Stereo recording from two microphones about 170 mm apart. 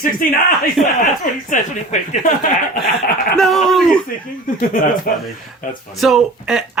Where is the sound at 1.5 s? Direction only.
45° left (ahead or behind).